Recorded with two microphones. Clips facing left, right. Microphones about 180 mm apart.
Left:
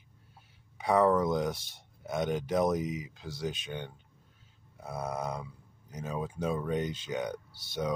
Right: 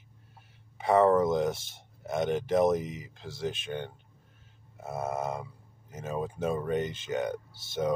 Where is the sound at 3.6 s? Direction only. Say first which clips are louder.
Right 4 dB; 55° right (ahead or behind).